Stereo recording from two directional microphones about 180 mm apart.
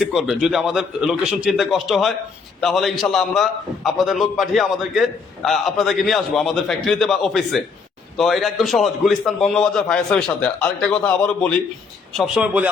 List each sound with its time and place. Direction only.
0.0 s a man's voice: centre (ahead or behind)